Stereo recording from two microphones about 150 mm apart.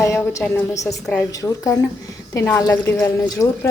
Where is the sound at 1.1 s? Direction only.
10° left (ahead or behind).